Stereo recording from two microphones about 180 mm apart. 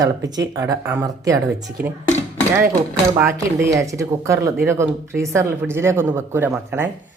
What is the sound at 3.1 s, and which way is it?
Speech, 15° right (ahead or behind).